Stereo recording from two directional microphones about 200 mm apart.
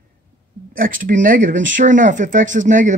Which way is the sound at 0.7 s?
45° right (ahead or behind).